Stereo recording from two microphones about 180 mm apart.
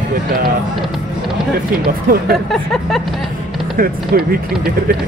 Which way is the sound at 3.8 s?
55° right (ahead or behind).